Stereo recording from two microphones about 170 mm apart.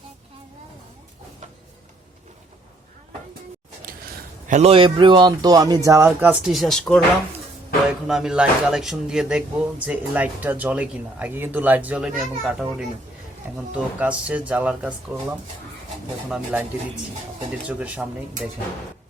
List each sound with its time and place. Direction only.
3.9 s a sound: 55° right (ahead or behind)
4.4 s a man's voice: 45° right (ahead or behind)
4.7 s speech: 30° right (ahead or behind); by 12.9 s 5° right (ahead or behind)
14.0 s speech: 10° right (ahead or behind)
16.3 s speech: 10° right (ahead or behind)
17.7 s speech: 10° right (ahead or behind)